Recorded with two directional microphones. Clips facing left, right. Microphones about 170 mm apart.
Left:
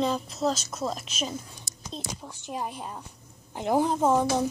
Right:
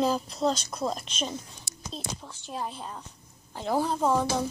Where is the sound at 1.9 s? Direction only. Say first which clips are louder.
Left 1 dB; 15° left (ahead or behind).